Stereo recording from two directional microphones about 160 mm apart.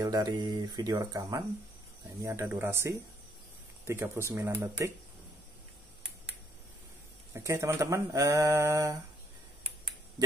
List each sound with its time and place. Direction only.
0.0 s speech: 25° right (ahead or behind)
7.3 s speech: 15° right (ahead or behind)